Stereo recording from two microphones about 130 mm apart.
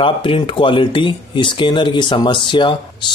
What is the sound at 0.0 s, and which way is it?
Speech, 40° left (ahead or behind).